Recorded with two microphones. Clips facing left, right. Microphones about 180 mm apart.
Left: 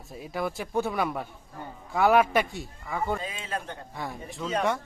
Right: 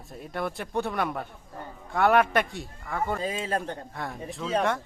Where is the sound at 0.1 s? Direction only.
Centre (ahead or behind).